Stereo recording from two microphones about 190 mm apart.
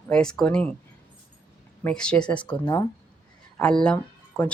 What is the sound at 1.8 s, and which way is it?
Speech, 5° left (ahead or behind).